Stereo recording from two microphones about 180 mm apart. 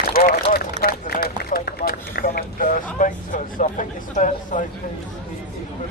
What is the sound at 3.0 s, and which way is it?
Speech, 45° left (ahead or behind).